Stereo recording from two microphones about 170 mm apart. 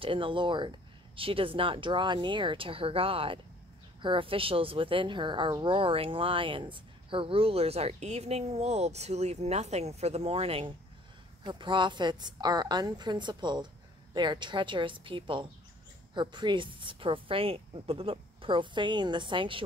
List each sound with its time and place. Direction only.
0.0 s a woman's voice: 30° right (ahead or behind)